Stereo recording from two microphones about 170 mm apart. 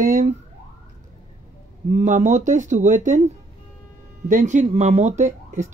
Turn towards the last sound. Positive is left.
turn(degrees=-45)  # may be behind; listen again after turning